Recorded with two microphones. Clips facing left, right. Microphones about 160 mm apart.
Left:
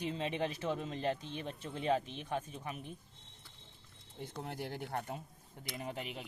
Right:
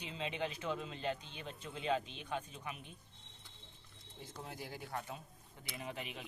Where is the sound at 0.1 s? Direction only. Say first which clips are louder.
Left 4 dB; 40° left (ahead or behind).